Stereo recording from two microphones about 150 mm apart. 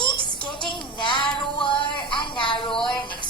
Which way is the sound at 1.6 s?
35° left (ahead or behind).